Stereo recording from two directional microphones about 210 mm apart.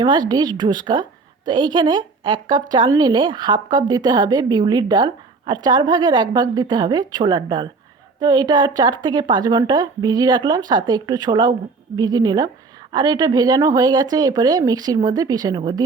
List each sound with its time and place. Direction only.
0.0 s a woman's voice: 20° right (ahead or behind)